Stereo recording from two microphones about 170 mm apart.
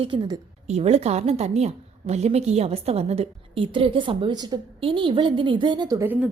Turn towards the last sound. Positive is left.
turn(degrees=-15)  # may be behind; listen again after turning